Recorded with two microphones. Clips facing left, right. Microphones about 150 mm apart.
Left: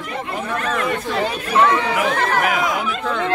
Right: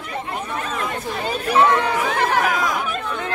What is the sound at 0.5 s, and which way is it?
Speech, 80° left.